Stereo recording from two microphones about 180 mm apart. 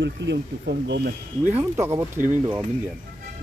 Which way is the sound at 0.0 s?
75° right (ahead or behind).